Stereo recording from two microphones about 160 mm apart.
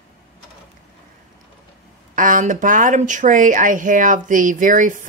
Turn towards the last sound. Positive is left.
turn(degrees=-55)  # may be behind; listen again after turning